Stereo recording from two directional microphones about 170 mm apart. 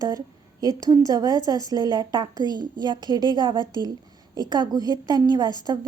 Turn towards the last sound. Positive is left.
turn(degrees=-25)  # may be behind; listen again after turning